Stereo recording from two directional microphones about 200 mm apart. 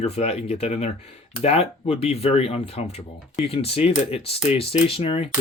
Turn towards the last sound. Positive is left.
turn(degrees=30)  # may be behind; listen again after turning